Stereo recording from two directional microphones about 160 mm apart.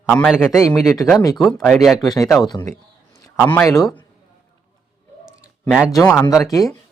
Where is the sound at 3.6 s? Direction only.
20° left (ahead or behind).